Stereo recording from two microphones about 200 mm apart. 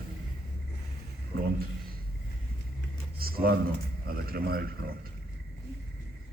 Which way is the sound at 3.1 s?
50° right (ahead or behind).